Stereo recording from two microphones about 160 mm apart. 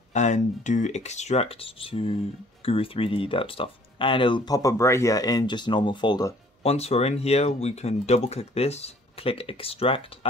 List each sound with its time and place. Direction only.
0.1 s speech: 45° left (ahead or behind); by 6.3 s 25° left (ahead or behind)
6.6 s speech: 40° left (ahead or behind)